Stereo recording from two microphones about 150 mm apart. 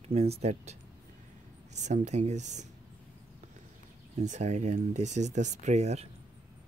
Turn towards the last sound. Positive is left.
turn(degrees=-45)  # may be behind; listen again after turning